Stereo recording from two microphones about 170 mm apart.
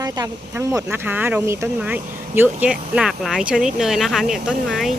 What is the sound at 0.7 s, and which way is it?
Speech, 15° right (ahead or behind).